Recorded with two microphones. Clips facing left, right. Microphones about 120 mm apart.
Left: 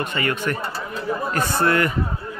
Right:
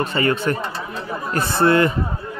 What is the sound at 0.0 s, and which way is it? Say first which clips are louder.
Speech: right 4 dB; 30° right (ahead or behind).